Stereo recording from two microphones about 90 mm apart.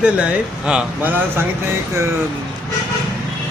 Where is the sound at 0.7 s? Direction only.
15° right (ahead or behind).